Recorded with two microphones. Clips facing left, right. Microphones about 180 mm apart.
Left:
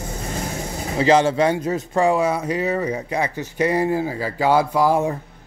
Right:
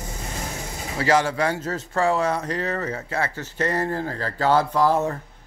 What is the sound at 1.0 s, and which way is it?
Speech, 20° left (ahead or behind).